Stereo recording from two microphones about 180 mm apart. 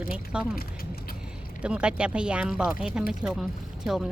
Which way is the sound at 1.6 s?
5° right (ahead or behind).